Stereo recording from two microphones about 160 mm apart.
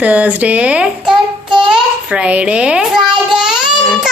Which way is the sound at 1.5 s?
5° right (ahead or behind).